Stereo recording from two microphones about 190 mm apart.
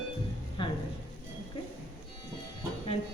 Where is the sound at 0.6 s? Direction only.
25° left (ahead or behind).